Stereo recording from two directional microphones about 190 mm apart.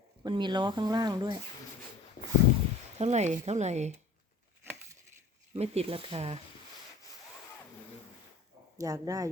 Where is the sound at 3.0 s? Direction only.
35° right (ahead or behind).